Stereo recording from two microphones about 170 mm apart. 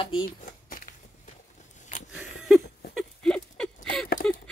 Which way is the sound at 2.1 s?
5° right (ahead or behind).